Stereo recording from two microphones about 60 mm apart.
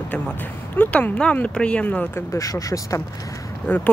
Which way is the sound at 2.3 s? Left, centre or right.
Left.